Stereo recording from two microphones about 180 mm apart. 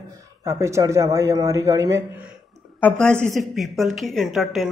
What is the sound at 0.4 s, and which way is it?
A man's voice, 15° right (ahead or behind).